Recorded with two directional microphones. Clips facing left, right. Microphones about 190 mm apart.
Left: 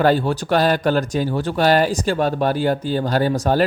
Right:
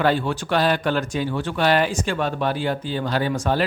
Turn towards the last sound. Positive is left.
turn(degrees=40)  # may be behind; listen again after turning